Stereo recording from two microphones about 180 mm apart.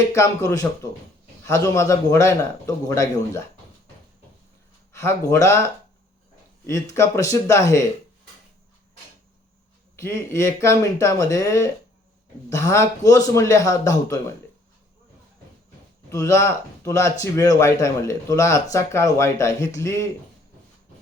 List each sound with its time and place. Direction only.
0.1 s speech: 20° left (ahead or behind)
4.9 s speech: 15° left (ahead or behind)
10.0 s speech: 15° left (ahead or behind)
16.0 s speech: 15° left (ahead or behind)